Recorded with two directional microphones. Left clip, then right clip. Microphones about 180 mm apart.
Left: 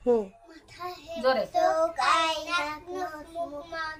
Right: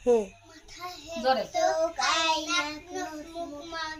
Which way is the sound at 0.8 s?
20° left (ahead or behind).